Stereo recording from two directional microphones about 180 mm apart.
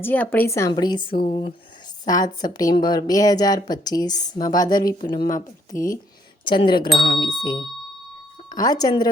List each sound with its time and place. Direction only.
0.0 s a woman's voice: 10° left (ahead or behind); by 7.3 s 25° left (ahead or behind)
8.4 s speech: 20° left (ahead or behind)